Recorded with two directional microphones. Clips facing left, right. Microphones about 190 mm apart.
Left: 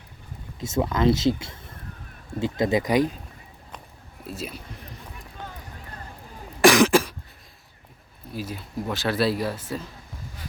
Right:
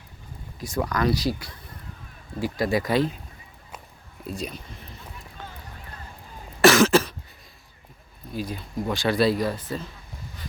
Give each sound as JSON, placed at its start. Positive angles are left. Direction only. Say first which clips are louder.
{"t": 0.6, "sound": "speech", "louder": "left 3 dB", "side_deg": 25}
{"t": 4.2, "sound": "speech", "louder": "right 2 dB", "side_deg": 5}
{"t": 6.6, "sound": "cough", "louder": "even", "side_deg": 15}
{"t": 8.3, "sound": "speech", "louder": "right 2 dB", "side_deg": 5}